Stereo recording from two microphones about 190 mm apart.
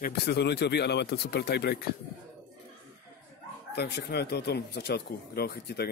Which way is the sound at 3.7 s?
60° left (ahead or behind).